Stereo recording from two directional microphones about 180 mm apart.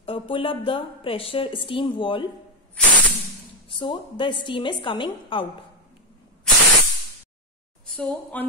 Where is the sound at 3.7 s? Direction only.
30° left (ahead or behind).